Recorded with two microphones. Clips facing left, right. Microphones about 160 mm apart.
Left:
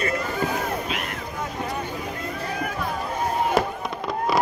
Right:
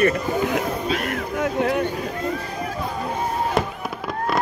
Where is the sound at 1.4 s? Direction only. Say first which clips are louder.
Right 9 dB; 85° right.